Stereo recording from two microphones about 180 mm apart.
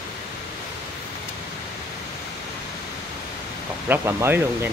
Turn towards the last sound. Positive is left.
turn(degrees=-10)  # may be behind; listen again after turning